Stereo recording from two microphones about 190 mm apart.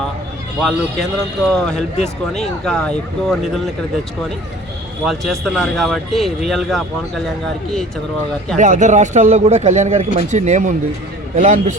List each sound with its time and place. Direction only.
0.6 s a man's voice: centre (ahead or behind)
5.0 s a man's voice: centre (ahead or behind)
8.5 s speech: 40° right (ahead or behind)